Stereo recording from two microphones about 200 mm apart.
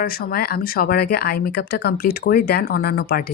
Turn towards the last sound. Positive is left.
turn(degrees=50)  # may be behind; listen again after turning